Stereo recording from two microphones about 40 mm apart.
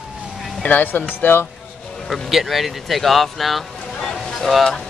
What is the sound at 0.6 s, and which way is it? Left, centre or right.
Speech, left.